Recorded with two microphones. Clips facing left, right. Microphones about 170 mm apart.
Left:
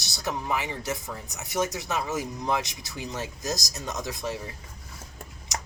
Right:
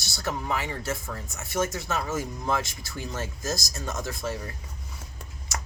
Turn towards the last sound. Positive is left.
turn(degrees=15)  # may be behind; listen again after turning